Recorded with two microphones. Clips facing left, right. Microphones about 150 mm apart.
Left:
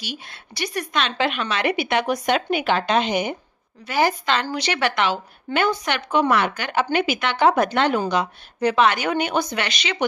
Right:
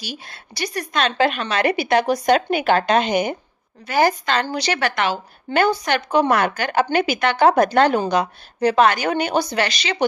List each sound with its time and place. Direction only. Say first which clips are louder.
0.0 s a woman's voice: right 1 dB; 40° right (ahead or behind)